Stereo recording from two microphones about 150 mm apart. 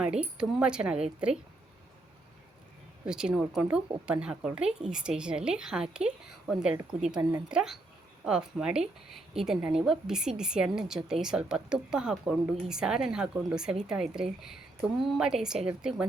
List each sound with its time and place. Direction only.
0.3 s speech: 5° right (ahead or behind)
3.1 s a woman's voice: 5° right (ahead or behind)